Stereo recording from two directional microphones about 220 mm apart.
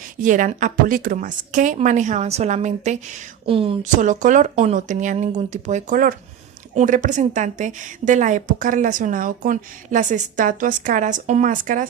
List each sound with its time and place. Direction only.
0.2 s a woman's voice: 35° right (ahead or behind)